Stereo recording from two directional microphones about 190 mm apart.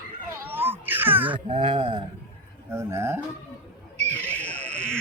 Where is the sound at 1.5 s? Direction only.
30° right (ahead or behind).